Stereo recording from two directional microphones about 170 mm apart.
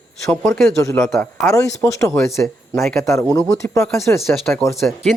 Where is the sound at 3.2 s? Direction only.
20° left (ahead or behind).